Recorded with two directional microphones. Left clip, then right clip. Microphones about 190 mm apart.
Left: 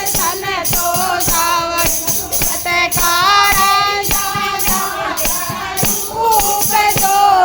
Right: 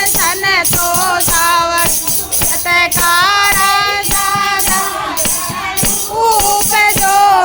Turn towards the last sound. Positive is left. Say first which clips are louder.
# right 2 dB
turn(degrees=-15)  # may be behind; listen again after turning